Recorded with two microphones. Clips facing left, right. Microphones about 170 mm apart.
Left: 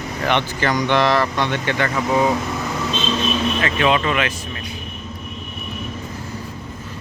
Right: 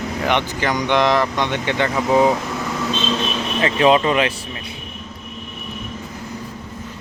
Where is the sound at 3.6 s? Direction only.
30° right (ahead or behind).